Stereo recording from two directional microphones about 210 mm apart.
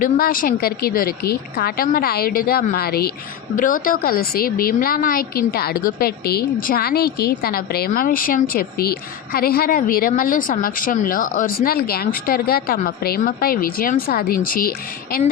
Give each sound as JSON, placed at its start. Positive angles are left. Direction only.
{"t": 0.0, "sound": "a woman's voice", "side_deg": 40}